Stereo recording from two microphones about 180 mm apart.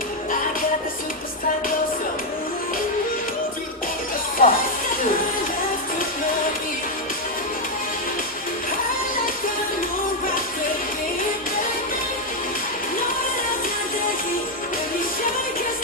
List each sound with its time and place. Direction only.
4.4 s music: 50° left (ahead or behind)